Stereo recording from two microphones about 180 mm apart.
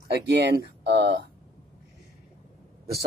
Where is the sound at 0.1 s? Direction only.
70° right (ahead or behind).